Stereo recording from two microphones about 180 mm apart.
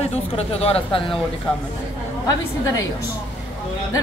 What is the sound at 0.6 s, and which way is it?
Speech, 30° left (ahead or behind).